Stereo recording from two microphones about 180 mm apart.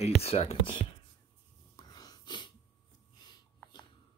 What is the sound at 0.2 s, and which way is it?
Speech, 35° left (ahead or behind).